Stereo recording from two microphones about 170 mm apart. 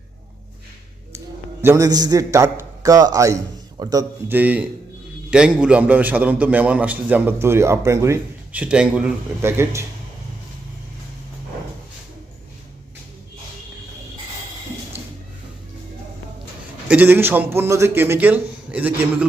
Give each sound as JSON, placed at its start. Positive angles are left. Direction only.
{"t": 1.6, "sound": "a man's voice", "side_deg": -20}
{"t": 16.9, "sound": "a man's voice", "side_deg": -10}